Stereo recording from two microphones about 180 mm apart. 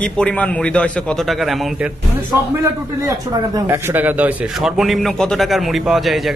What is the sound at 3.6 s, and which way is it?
A man's voice, 10° right (ahead or behind).